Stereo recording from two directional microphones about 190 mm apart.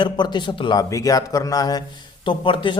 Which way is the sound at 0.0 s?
25° left (ahead or behind).